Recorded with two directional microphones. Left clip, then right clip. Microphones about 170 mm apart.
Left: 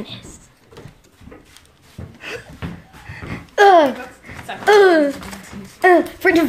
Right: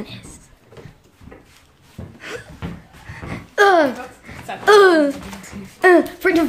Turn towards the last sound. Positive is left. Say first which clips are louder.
# left 2 dB
turn(degrees=5)  # may be behind; listen again after turning